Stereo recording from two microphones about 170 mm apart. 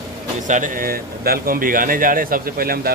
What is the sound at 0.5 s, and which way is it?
Speech, 50° right (ahead or behind).